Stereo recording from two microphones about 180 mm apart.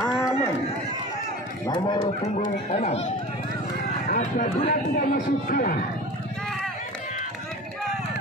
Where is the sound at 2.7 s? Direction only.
35° left (ahead or behind).